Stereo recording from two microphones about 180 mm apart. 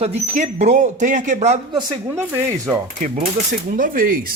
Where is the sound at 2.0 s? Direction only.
15° right (ahead or behind).